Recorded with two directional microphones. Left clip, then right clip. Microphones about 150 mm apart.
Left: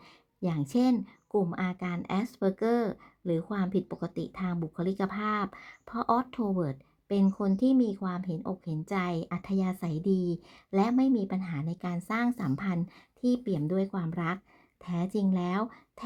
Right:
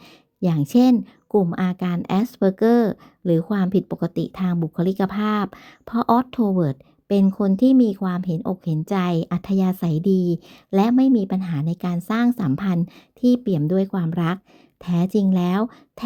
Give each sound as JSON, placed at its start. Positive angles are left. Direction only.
{"t": 0.4, "sound": "speech", "side_deg": -45}